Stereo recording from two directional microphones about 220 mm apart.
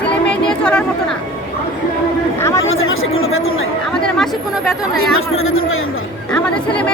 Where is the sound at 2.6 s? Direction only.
65° left (ahead or behind).